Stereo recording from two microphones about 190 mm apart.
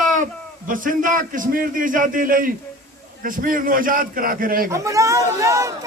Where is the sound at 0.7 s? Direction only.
45° right (ahead or behind).